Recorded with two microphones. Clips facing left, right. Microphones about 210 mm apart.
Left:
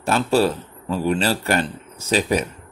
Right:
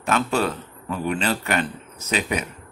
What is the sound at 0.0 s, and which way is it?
A man's voice, 35° left (ahead or behind).